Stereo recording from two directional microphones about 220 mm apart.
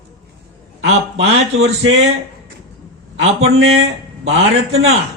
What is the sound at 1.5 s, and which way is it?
Speech, 65° right (ahead or behind).